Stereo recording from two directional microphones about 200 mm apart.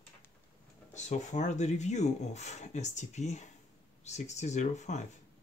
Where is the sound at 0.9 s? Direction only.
35° left (ahead or behind).